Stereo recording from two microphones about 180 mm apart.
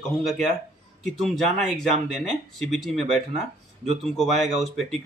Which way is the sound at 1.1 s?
Centre (ahead or behind).